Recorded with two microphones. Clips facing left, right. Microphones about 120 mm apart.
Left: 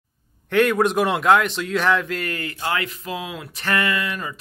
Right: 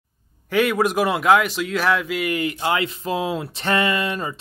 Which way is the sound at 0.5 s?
5° right (ahead or behind).